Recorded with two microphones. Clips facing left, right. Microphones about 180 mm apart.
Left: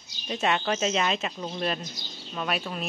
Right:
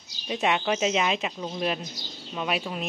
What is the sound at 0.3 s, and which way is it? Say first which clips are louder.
Speech: right 1 dB; 10° right (ahead or behind).